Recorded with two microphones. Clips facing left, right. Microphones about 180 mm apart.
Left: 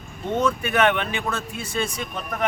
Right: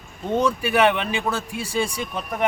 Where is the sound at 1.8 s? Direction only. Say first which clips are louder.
Right 2 dB; 30° right (ahead or behind).